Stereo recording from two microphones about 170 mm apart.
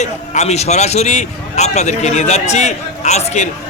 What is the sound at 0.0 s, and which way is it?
A man's voice, 40° left (ahead or behind).